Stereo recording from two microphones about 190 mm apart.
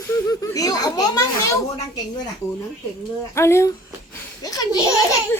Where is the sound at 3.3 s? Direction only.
15° left (ahead or behind).